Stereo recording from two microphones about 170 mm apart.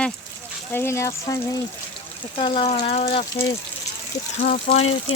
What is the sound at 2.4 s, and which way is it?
Speech, 30° left (ahead or behind).